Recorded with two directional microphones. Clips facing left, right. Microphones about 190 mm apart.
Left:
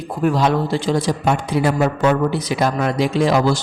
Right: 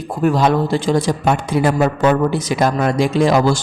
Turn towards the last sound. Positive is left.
turn(degrees=-45)  # may be behind; listen again after turning